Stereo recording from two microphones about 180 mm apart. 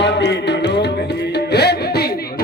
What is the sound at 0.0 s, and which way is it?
Music, 75° left (ahead or behind).